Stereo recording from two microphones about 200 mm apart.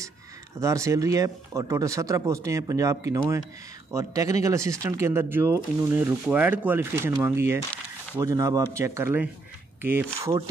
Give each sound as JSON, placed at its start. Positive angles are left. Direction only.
{"t": 0.6, "sound": "speech", "side_deg": -15}